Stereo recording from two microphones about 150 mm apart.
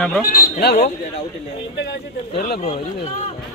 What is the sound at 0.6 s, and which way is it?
Speech, 90° left.